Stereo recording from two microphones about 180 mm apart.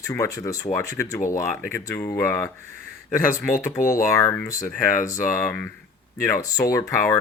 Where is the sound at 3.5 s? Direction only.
15° left (ahead or behind).